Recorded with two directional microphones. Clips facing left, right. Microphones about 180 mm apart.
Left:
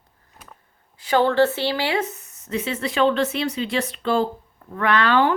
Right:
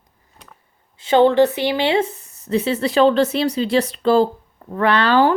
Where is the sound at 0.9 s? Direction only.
25° right (ahead or behind).